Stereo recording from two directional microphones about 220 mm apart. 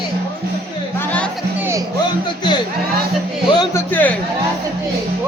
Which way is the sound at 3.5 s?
20° left (ahead or behind).